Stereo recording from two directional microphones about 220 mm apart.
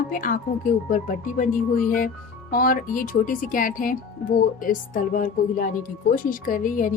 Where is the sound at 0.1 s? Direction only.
40° left (ahead or behind).